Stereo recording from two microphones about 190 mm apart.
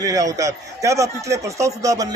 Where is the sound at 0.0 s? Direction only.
20° right (ahead or behind).